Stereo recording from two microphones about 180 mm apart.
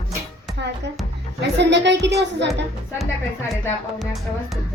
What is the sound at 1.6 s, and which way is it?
Speech, 75° right (ahead or behind).